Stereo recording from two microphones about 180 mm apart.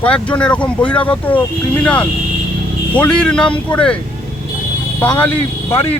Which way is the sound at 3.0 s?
5° left (ahead or behind).